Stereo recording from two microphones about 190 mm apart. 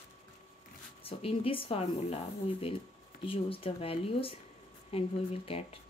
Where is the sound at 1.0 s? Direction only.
30° left (ahead or behind).